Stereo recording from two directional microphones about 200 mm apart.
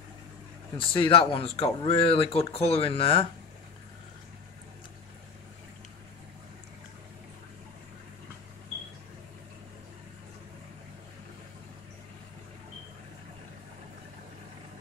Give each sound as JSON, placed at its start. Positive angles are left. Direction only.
{"t": 0.7, "sound": "speech", "side_deg": 25}